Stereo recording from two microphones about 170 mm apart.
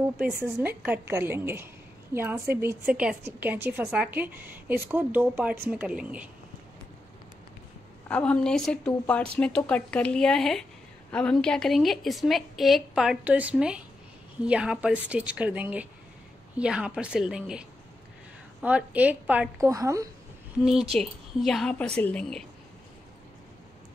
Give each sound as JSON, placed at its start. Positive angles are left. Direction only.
{"t": 0.6, "sound": "a woman's voice", "side_deg": -10}
{"t": 8.1, "sound": "a woman's voice", "side_deg": 5}
{"t": 19.6, "sound": "a woman's voice", "side_deg": -20}
{"t": 20.9, "sound": "a woman's voice", "side_deg": 0}